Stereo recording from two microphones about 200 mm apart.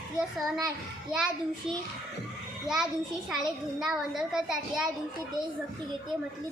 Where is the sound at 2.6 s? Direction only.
Centre (ahead or behind).